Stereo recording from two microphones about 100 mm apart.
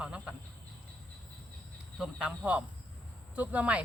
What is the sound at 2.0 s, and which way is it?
Speech, 10° right (ahead or behind).